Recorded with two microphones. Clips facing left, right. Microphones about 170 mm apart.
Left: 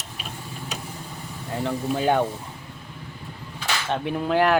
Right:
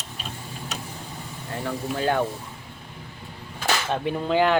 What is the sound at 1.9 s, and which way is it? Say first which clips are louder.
Speech: left 2 dB; 15° left (ahead or behind).